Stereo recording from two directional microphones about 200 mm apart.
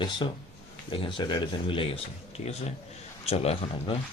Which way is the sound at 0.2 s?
20° left (ahead or behind).